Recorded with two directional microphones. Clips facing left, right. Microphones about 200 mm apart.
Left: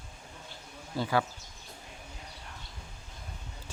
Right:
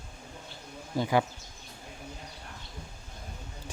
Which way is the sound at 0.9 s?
15° right (ahead or behind).